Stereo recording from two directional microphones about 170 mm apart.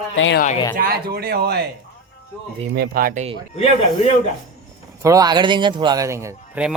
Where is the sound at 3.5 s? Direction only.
40° left (ahead or behind).